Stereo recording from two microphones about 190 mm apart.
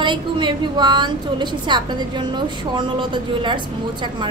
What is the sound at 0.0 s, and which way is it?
A woman's voice, 25° right (ahead or behind).